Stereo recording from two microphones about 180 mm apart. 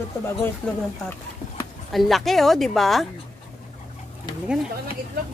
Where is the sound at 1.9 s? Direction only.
Centre (ahead or behind).